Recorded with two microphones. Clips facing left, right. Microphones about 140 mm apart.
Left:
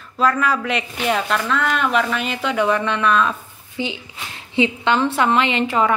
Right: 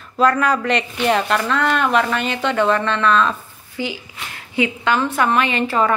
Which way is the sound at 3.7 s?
20° left (ahead or behind).